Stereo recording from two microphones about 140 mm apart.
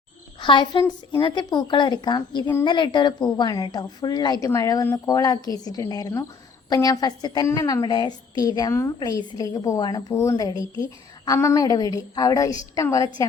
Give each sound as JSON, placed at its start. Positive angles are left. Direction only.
{"t": 0.3, "sound": "a child's voice", "side_deg": 35}